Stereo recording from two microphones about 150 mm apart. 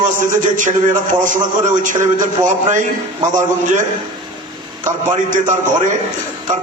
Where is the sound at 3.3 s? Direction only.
60° right (ahead or behind).